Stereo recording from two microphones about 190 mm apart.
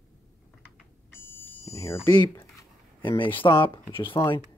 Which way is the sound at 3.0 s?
25° left (ahead or behind).